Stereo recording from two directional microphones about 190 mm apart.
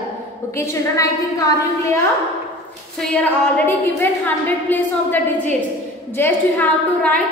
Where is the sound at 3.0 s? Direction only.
5° left (ahead or behind).